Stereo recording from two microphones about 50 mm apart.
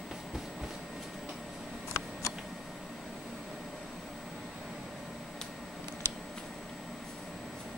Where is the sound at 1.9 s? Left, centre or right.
Left.